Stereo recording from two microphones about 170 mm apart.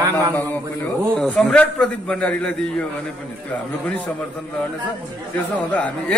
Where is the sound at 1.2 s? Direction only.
5° left (ahead or behind).